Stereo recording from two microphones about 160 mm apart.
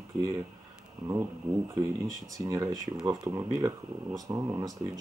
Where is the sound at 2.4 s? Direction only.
20° right (ahead or behind).